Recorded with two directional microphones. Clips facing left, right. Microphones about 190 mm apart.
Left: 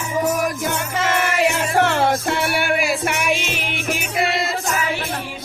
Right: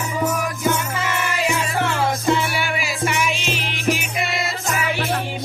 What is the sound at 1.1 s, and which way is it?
Music, 55° left (ahead or behind).